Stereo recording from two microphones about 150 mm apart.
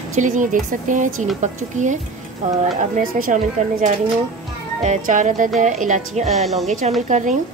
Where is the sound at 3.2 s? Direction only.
60° right (ahead or behind).